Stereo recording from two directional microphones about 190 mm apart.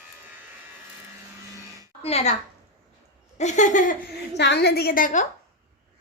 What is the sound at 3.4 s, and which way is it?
Laughter, 40° left (ahead or behind).